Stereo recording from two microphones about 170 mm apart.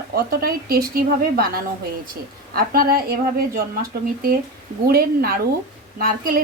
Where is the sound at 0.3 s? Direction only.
60° right (ahead or behind).